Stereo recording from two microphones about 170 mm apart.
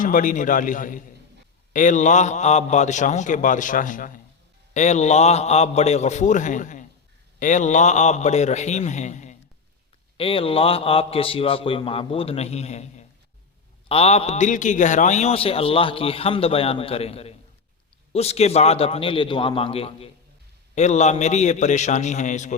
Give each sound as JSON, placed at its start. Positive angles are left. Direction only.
{"t": 0.0, "sound": "a man's voice", "side_deg": 50}
{"t": 10.2, "sound": "a man's voice", "side_deg": 35}